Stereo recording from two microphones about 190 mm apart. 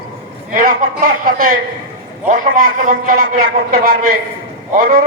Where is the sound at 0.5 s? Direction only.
45° right (ahead or behind).